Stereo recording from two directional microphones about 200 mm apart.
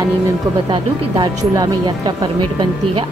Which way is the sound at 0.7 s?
20° right (ahead or behind).